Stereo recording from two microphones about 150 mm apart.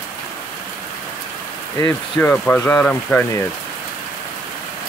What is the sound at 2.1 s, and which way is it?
Speech, 10° left (ahead or behind).